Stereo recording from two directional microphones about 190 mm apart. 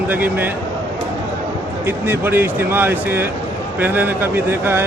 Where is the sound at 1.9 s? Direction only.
10° right (ahead or behind).